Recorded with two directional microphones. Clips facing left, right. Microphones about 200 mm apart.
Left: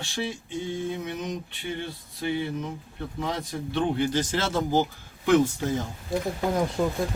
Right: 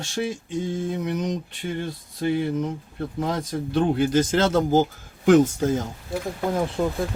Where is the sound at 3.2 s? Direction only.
45° right (ahead or behind).